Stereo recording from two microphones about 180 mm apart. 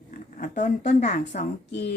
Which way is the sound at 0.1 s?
45° left (ahead or behind).